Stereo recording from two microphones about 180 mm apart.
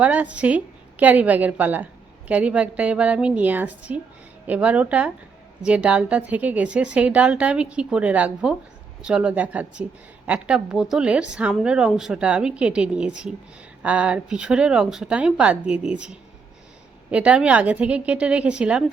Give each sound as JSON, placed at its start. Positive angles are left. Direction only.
{"t": 0.0, "sound": "a woman's voice", "side_deg": -10}